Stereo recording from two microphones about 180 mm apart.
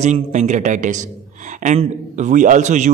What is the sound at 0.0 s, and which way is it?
A man's voice, 40° right (ahead or behind).